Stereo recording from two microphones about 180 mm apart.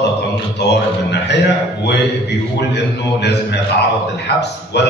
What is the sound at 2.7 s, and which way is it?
A man's voice, 70° left (ahead or behind).